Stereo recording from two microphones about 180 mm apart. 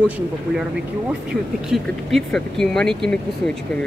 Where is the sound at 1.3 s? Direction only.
Centre (ahead or behind).